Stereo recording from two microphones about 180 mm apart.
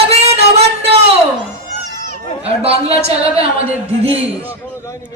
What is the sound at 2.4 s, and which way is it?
Speech, 35° right (ahead or behind).